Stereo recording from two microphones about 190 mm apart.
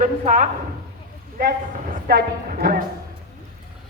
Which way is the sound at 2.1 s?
55° right (ahead or behind).